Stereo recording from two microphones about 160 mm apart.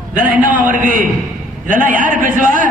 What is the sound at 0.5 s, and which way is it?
A man's voice, 60° right (ahead or behind).